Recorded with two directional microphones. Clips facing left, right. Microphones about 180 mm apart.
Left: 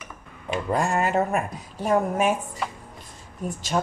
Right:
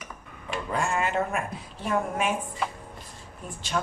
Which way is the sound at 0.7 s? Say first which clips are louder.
Left 3 dB; 40° left (ahead or behind).